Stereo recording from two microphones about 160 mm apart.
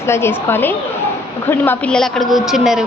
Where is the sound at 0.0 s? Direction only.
15° left (ahead or behind).